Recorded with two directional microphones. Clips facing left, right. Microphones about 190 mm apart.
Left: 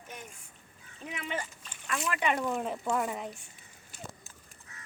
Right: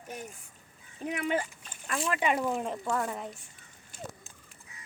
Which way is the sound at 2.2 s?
5° right (ahead or behind).